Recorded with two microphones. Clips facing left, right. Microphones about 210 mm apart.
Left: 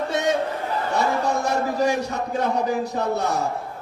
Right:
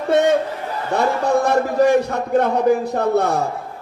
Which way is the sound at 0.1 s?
55° right (ahead or behind).